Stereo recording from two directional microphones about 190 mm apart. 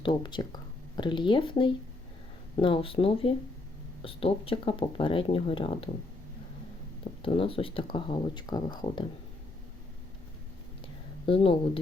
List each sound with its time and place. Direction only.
0.0 s speech: 25° left (ahead or behind)
7.2 s speech: 30° left (ahead or behind)
11.3 s speech: 30° left (ahead or behind)